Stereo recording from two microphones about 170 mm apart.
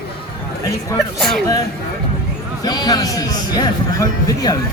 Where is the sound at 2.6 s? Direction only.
25° left (ahead or behind).